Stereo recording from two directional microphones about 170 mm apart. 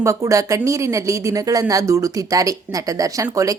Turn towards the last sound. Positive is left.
turn(degrees=-20)  # may be behind; listen again after turning